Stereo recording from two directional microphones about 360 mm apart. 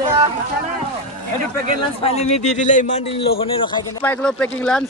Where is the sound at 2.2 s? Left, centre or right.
Centre.